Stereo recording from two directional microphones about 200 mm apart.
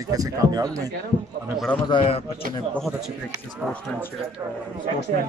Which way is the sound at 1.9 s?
30° left (ahead or behind).